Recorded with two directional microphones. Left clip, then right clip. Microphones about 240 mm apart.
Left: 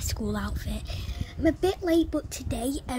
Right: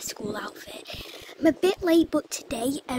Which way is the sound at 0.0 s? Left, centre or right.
Centre.